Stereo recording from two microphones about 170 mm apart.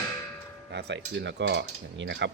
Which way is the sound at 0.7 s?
85° right.